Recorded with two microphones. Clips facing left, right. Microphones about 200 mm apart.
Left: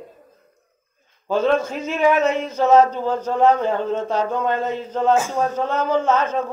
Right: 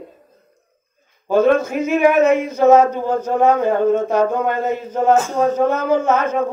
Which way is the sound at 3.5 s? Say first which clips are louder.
Right 6 dB; 50° right (ahead or behind).